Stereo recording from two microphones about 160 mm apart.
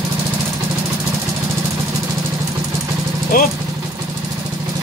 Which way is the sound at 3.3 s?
65° left (ahead or behind).